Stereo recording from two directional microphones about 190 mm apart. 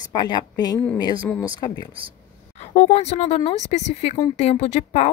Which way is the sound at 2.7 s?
35° left (ahead or behind).